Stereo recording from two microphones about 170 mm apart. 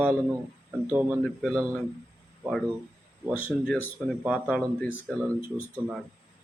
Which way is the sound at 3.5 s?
5° right (ahead or behind).